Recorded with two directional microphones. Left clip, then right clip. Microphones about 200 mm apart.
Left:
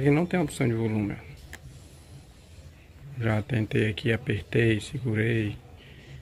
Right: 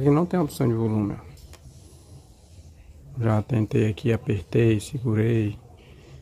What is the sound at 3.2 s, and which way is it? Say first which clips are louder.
Speech: right 3 dB; 20° right (ahead or behind).